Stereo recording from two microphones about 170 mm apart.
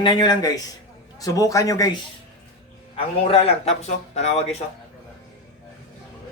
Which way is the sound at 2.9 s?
35° left (ahead or behind).